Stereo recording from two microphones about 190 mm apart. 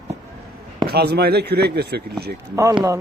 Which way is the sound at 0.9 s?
55° right (ahead or behind).